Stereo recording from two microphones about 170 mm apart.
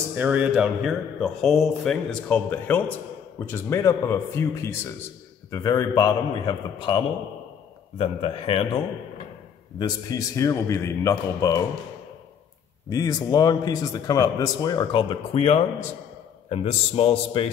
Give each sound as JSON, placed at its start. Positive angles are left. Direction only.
{"t": 0.1, "sound": "speech", "side_deg": -10}
{"t": 8.0, "sound": "a man's voice", "side_deg": 35}
{"t": 9.8, "sound": "speech", "side_deg": 20}
{"t": 12.9, "sound": "a man's voice", "side_deg": 20}